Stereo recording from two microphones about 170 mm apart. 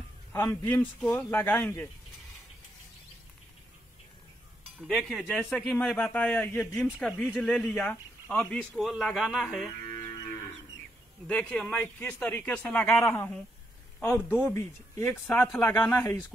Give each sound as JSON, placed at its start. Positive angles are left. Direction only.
{"t": 0.3, "sound": "speech", "side_deg": 15}
{"t": 4.8, "sound": "a man's voice", "side_deg": 0}
{"t": 10.1, "sound": "moo", "side_deg": 25}
{"t": 11.2, "sound": "speech", "side_deg": 5}
{"t": 12.9, "sound": "speech", "side_deg": 15}
{"t": 15.2, "sound": "a man's voice", "side_deg": 0}
{"t": 15.6, "sound": "speech", "side_deg": 10}